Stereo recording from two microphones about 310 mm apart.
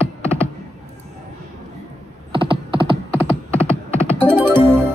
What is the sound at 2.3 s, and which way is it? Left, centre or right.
Computer keyboard, centre.